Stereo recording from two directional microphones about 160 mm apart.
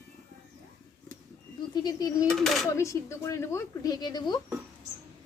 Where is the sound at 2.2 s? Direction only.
Centre (ahead or behind).